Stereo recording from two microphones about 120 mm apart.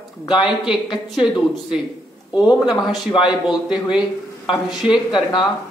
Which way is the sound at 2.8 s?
Centre (ahead or behind).